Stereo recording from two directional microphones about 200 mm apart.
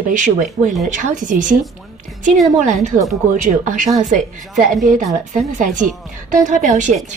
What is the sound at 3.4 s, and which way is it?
Speech, 40° right (ahead or behind).